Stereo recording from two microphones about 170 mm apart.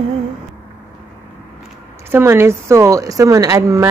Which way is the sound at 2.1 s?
15° right (ahead or behind).